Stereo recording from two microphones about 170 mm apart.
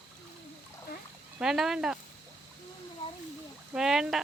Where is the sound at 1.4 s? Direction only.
Centre (ahead or behind).